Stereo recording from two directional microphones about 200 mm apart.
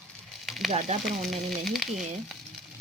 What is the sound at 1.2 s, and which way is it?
Speech, centre (ahead or behind).